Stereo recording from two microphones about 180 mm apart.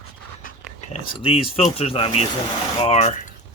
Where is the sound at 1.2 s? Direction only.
30° left (ahead or behind).